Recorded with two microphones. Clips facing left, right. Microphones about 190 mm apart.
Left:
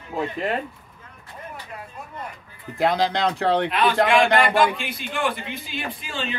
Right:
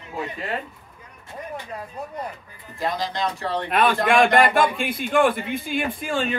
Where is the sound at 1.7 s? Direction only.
40° right (ahead or behind).